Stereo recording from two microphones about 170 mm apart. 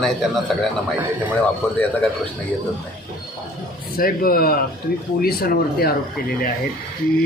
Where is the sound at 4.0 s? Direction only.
60° left (ahead or behind).